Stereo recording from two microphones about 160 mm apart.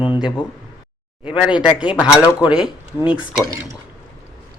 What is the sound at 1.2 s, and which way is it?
Speech, 5° right (ahead or behind).